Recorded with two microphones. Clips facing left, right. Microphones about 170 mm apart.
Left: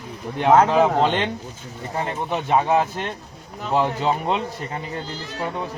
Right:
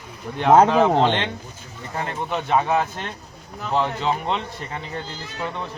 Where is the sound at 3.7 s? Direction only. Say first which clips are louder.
Left 2 dB; 10° left (ahead or behind).